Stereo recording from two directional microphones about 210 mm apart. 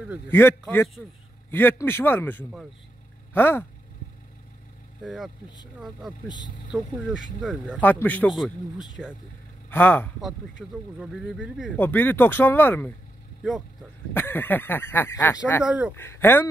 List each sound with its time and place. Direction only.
0.3 s speech: 10° left (ahead or behind)
5.0 s a man's voice: centre (ahead or behind)
6.2 s speech: 20° left (ahead or behind)
6.7 s a man's voice: 5° right (ahead or behind)
7.8 s a man's voice: 10° left (ahead or behind)
9.7 s speech: 10° left (ahead or behind)
10.6 s a man's voice: 5° right (ahead or behind)
11.7 s speech: 10° left (ahead or behind)
14.1 s speech: 10° left (ahead or behind)
15.6 s a man's voice: 5° right (ahead or behind)
16.0 s speech: 10° left (ahead or behind)